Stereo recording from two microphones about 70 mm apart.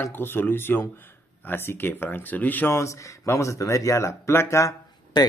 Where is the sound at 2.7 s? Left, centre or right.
Left.